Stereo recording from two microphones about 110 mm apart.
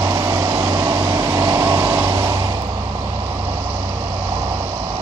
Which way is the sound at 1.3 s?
25° right (ahead or behind).